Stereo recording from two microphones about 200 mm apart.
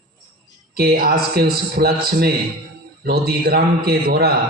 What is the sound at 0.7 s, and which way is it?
A man's voice, 50° right (ahead or behind).